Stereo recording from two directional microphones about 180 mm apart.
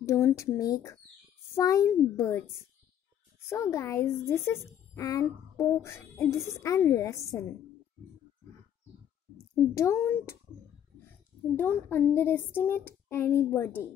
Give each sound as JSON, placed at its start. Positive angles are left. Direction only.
{"t": 0.0, "sound": "speech", "side_deg": 15}
{"t": 9.8, "sound": "speech", "side_deg": 15}
{"t": 11.5, "sound": "speech", "side_deg": 10}